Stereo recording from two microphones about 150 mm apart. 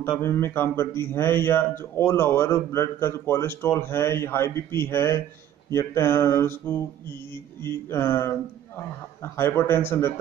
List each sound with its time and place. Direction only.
0.2 s a man's voice: 15° left (ahead or behind)